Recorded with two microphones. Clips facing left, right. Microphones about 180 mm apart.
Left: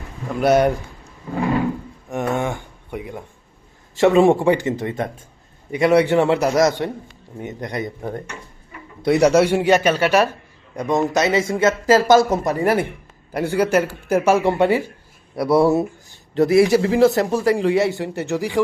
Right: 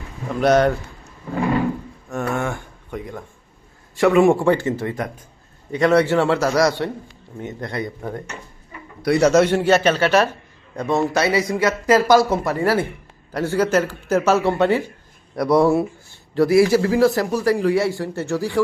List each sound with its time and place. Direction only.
0.3 s speech: 10° left (ahead or behind)
2.0 s speech: 20° left (ahead or behind)
3.9 s speech: 25° left (ahead or behind)
5.7 s speech: 15° left (ahead or behind)
16.3 s speech: 20° left (ahead or behind)